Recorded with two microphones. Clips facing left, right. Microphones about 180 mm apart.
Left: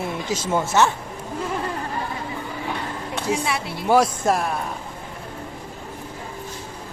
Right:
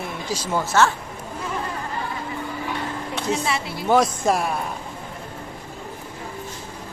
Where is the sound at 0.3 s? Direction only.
20° left (ahead or behind).